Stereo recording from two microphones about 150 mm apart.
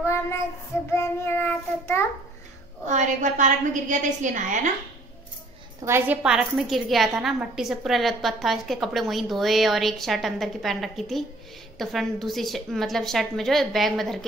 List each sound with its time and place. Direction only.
0.0 s child singing: 20° left (ahead or behind)
2.9 s a woman's voice: 55° right (ahead or behind)
5.8 s a woman's voice: 15° right (ahead or behind); by 14.2 s centre (ahead or behind)